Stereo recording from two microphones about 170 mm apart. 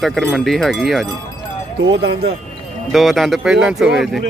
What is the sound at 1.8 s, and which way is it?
Speech, 85° right.